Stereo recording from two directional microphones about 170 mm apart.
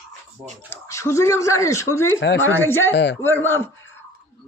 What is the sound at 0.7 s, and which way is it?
A man's voice, 15° left (ahead or behind).